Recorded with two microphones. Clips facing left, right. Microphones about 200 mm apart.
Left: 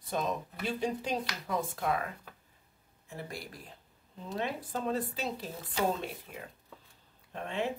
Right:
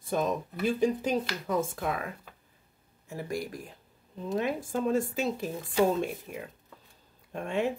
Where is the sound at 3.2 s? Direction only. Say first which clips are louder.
Right 9 dB; 45° right (ahead or behind).